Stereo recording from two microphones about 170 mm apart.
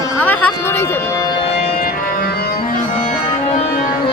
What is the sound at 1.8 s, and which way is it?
Music, 60° left (ahead or behind).